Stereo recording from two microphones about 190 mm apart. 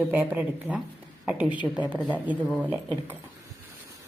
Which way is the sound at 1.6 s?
25° left (ahead or behind).